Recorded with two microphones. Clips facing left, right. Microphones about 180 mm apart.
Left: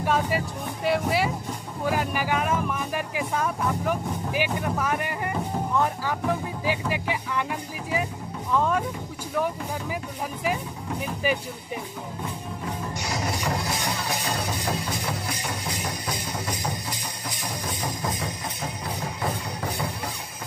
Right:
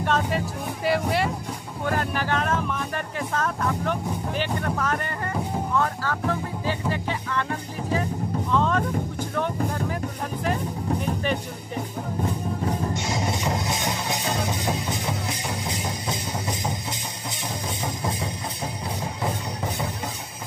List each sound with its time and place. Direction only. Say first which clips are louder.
0.0 s vehicle: even; 5° left (ahead or behind)
0.8 s speech: even; centre (ahead or behind)
7.9 s music: right 3 dB; 10° left (ahead or behind)
10.4 s music: right 2 dB; 5° left (ahead or behind)
12.9 s music: right 2 dB; 25° right (ahead or behind)